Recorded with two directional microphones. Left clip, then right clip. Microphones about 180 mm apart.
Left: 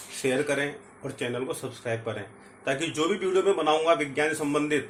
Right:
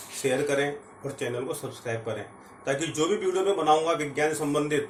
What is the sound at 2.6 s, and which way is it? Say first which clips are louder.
A man's voice: even; 20° left (ahead or behind).